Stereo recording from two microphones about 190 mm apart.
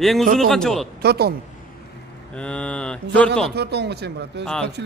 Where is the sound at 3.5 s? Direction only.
60° right (ahead or behind).